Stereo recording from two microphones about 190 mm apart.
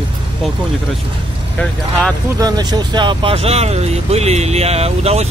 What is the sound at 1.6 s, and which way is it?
Speech, 5° left (ahead or behind).